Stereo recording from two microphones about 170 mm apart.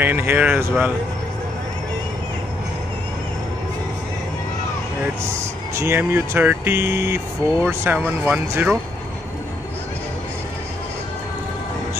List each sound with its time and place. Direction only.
0.0 s speech: 10° right (ahead or behind)
5.8 s speech: 15° right (ahead or behind)